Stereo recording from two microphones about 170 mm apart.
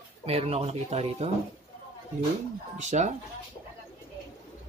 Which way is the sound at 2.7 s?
45° right (ahead or behind).